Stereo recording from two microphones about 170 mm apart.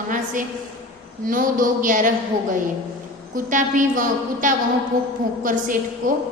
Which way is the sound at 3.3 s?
50° right (ahead or behind).